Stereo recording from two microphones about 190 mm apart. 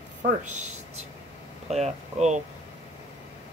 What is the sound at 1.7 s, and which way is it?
Speech, 35° right (ahead or behind).